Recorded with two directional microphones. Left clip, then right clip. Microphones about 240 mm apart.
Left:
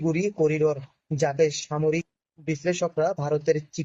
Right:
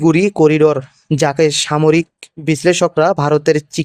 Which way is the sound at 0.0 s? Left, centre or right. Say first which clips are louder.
Right 12 dB; right.